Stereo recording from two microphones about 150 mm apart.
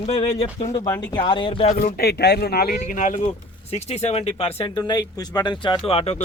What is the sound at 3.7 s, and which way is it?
Speech, 45° left (ahead or behind).